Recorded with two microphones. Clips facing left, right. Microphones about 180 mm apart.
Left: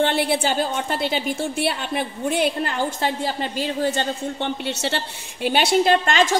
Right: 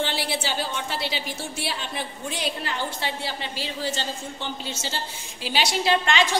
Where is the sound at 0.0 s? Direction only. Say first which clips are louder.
Left 7 dB; 55° left (ahead or behind).